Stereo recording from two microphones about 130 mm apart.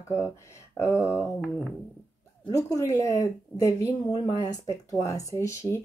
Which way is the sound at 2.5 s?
25° left (ahead or behind).